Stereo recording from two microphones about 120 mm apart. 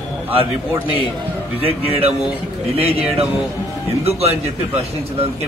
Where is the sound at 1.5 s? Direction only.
55° right (ahead or behind).